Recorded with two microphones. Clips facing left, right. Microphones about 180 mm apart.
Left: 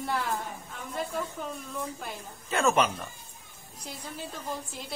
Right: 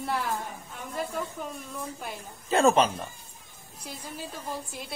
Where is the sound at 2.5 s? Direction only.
30° right (ahead or behind).